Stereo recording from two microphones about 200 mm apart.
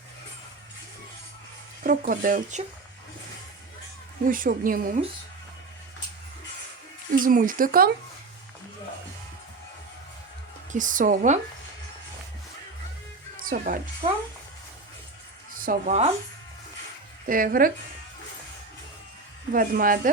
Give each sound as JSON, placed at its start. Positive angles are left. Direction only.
{"t": 1.8, "sound": "speech", "side_deg": -45}
{"t": 4.3, "sound": "speech", "side_deg": -45}
{"t": 7.2, "sound": "speech", "side_deg": -45}
{"t": 10.7, "sound": "speech", "side_deg": -40}
{"t": 13.4, "sound": "speech", "side_deg": -45}
{"t": 14.0, "sound": "speech", "side_deg": -30}
{"t": 15.6, "sound": "speech", "side_deg": -40}
{"t": 17.2, "sound": "speech", "side_deg": -45}
{"t": 19.5, "sound": "speech", "side_deg": -45}